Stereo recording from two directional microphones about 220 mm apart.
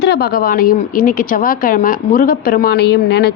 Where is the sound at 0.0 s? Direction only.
45° left (ahead or behind).